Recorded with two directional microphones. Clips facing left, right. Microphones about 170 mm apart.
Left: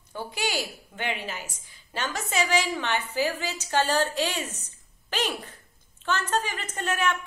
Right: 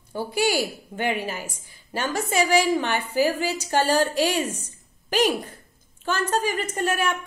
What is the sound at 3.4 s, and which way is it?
Speech, 10° right (ahead or behind).